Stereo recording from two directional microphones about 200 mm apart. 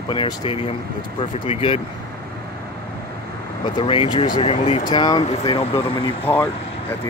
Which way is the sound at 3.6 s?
25° left (ahead or behind).